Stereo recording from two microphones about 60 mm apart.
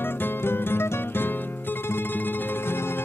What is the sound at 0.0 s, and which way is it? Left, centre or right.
Music, left.